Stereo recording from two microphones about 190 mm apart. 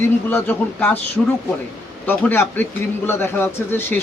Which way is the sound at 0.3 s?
10° left (ahead or behind).